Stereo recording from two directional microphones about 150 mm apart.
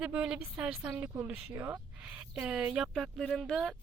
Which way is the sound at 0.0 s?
5° right (ahead or behind).